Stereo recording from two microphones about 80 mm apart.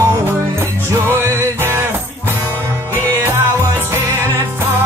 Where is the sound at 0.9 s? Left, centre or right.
Right.